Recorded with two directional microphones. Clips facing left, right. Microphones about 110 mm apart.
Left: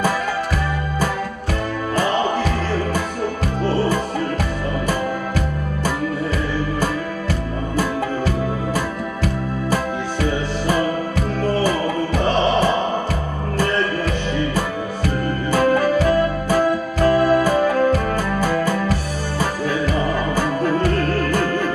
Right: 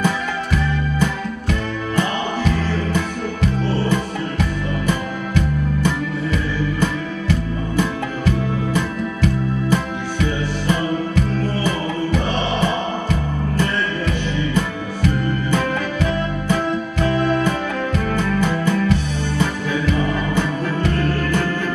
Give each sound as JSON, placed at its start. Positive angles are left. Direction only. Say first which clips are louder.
{"t": 15.5, "sound": "music", "louder": "left 9 dB", "side_deg": 40}